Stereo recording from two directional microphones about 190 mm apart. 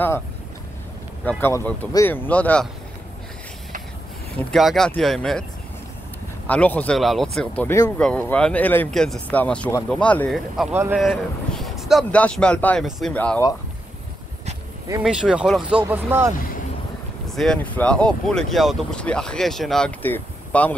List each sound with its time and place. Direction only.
1.4 s speech: 10° left (ahead or behind)
4.5 s speech: centre (ahead or behind)
6.4 s speech: 10° left (ahead or behind)
10.7 s speech: 10° right (ahead or behind)
11.0 s speech: centre (ahead or behind)
15.0 s speech: 5° right (ahead or behind)
17.4 s speech: 5° left (ahead or behind)